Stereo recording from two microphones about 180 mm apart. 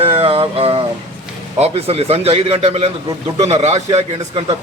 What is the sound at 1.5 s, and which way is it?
A man's voice, 35° right (ahead or behind).